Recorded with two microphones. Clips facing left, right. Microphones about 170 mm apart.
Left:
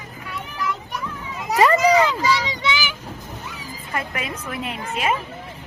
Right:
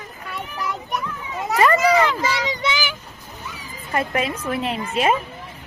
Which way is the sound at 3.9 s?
30° right (ahead or behind).